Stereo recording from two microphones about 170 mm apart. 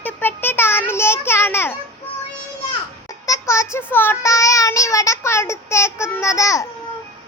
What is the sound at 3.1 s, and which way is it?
Child singing, 20° left (ahead or behind).